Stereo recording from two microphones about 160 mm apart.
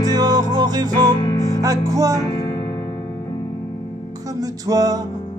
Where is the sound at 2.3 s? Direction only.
30° left (ahead or behind).